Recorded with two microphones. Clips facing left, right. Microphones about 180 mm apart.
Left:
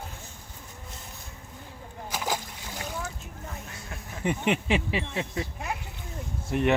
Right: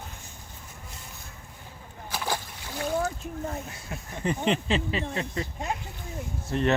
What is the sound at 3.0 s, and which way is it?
Boat, 55° right (ahead or behind).